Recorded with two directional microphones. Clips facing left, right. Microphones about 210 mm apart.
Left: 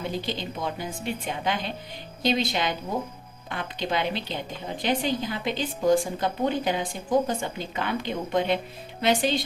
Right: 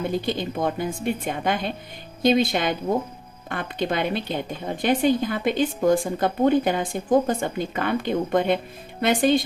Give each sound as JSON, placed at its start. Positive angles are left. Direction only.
{"t": 0.1, "sound": "a woman's voice", "side_deg": -50}